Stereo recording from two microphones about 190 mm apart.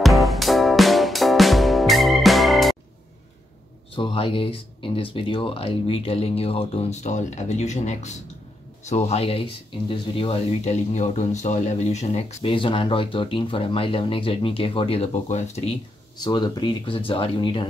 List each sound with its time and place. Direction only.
0.0 s music: centre (ahead or behind)
3.9 s speech: 30° left (ahead or behind)
16.2 s speech: 20° left (ahead or behind)